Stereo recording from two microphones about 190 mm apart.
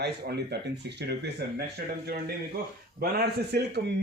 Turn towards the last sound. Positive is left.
turn(degrees=-60)  # may be behind; listen again after turning